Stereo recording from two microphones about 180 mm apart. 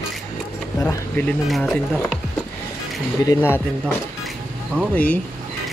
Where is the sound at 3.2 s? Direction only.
15° left (ahead or behind).